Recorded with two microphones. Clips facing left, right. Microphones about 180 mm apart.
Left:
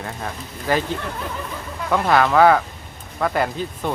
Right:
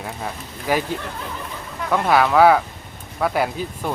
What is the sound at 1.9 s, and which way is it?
Speech, centre (ahead or behind).